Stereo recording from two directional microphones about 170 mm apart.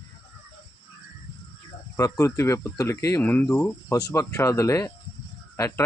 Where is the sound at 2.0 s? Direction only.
20° left (ahead or behind).